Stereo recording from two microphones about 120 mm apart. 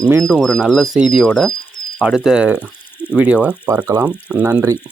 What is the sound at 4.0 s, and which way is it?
Speech, 25° right (ahead or behind).